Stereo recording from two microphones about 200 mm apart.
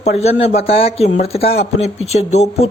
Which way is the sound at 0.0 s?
30° left (ahead or behind).